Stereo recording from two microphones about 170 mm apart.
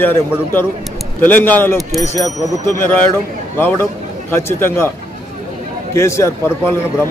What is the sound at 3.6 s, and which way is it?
A man's voice, 15° left (ahead or behind).